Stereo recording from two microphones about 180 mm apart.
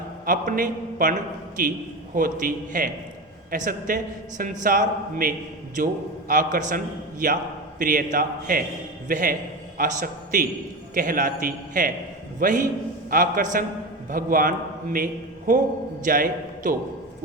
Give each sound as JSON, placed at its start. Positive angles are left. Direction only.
{"t": 0.3, "sound": "a man's voice", "side_deg": -50}
{"t": 2.1, "sound": "a man's voice", "side_deg": -50}